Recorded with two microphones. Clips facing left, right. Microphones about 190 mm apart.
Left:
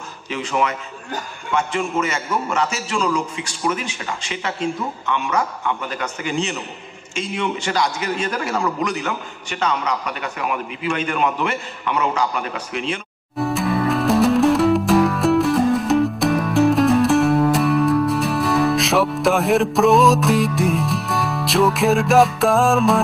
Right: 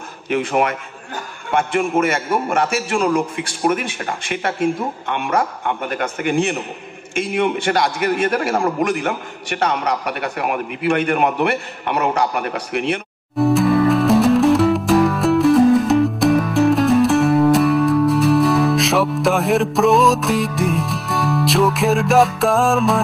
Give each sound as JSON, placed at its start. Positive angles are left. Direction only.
{"t": 0.3, "sound": "a man's voice", "side_deg": -55}
{"t": 13.4, "sound": "music", "side_deg": 0}